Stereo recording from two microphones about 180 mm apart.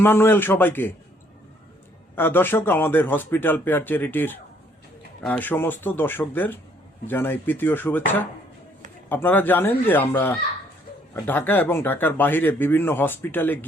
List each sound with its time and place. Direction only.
0.0 s speech: 10° left (ahead or behind)
2.1 s speech: 10° left (ahead or behind)
9.0 s speech: 10° left (ahead or behind)